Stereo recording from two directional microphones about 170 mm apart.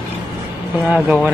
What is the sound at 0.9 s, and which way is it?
Speech, centre (ahead or behind).